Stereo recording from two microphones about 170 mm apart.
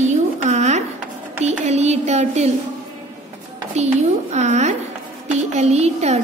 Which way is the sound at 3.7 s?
40° right (ahead or behind).